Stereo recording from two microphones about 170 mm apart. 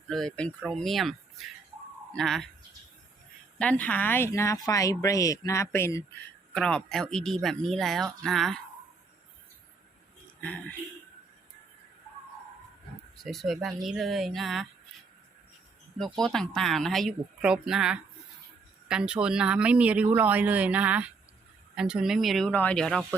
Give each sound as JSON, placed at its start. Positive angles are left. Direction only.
{"t": 0.1, "sound": "speech", "side_deg": 5}
{"t": 3.6, "sound": "speech", "side_deg": 10}
{"t": 6.5, "sound": "speech", "side_deg": 5}
{"t": 13.1, "sound": "speech", "side_deg": 0}
{"t": 16.0, "sound": "speech", "side_deg": 0}